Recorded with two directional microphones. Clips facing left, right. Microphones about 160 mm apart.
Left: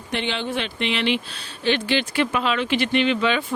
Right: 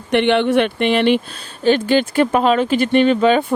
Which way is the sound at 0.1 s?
60° right (ahead or behind).